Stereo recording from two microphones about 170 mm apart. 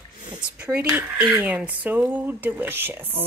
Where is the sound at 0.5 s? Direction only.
10° right (ahead or behind).